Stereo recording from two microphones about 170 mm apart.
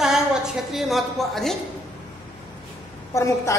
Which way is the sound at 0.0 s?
Centre (ahead or behind).